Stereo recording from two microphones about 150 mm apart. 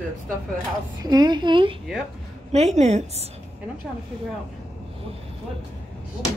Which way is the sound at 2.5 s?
50° right (ahead or behind).